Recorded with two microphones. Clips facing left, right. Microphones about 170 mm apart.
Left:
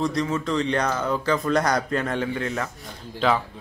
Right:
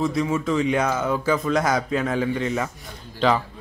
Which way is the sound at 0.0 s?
5° right (ahead or behind).